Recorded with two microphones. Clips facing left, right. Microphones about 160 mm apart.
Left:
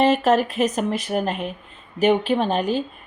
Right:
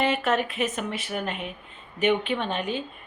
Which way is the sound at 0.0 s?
35° left (ahead or behind).